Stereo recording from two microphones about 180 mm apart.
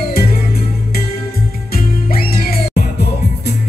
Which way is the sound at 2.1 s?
55° left (ahead or behind).